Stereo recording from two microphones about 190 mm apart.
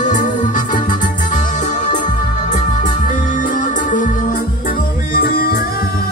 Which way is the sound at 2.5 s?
45° left (ahead or behind).